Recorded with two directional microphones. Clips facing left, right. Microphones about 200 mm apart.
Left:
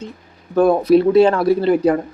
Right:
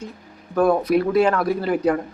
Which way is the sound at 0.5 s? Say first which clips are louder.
Left 5 dB; 25° left (ahead or behind).